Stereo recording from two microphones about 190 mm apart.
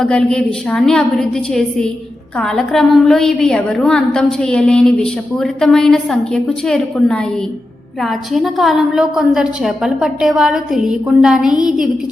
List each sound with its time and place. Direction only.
0.0 s a woman's voice: 5° left (ahead or behind)